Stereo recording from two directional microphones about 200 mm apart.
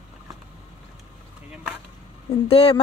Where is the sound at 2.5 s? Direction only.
30° left (ahead or behind).